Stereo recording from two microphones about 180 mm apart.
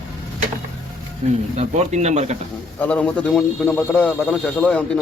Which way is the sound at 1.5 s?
40° right (ahead or behind).